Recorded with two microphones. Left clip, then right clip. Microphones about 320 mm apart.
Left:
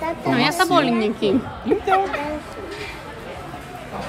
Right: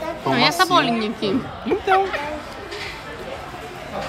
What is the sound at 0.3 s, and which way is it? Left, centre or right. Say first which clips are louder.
Music: right 2 dB; centre.